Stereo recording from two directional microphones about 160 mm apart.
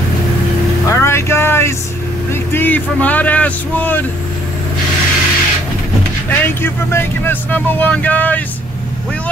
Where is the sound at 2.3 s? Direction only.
15° left (ahead or behind).